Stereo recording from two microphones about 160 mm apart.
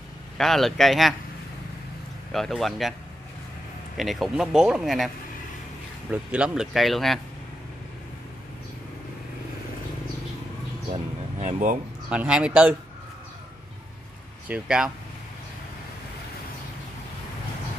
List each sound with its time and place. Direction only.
0.4 s speech: centre (ahead or behind)
2.3 s speech: centre (ahead or behind)
3.9 s speech: centre (ahead or behind)
11.3 s speech: 50° right (ahead or behind)
12.1 s speech: 5° right (ahead or behind)
14.5 s speech: 5° right (ahead or behind)